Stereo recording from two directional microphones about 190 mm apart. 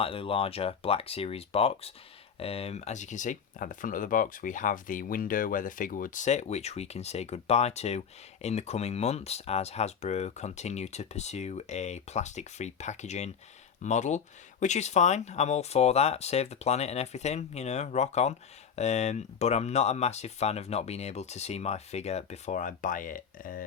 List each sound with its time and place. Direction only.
0.0 s speech: 30° left (ahead or behind); by 23.6 s 45° left (ahead or behind)